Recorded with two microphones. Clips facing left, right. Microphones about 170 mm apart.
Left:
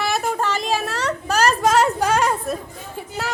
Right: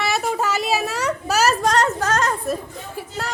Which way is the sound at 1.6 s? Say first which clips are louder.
Left 2 dB; 5° left (ahead or behind).